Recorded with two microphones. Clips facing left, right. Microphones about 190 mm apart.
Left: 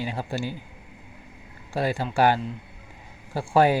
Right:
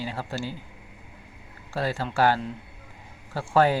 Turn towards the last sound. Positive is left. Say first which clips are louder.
# left 2 dB
turn(degrees=15)  # may be behind; listen again after turning